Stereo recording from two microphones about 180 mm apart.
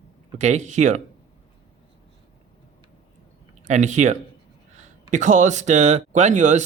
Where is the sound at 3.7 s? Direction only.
40° right (ahead or behind).